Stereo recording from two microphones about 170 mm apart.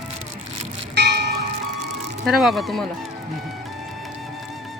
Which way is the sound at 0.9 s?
90° right.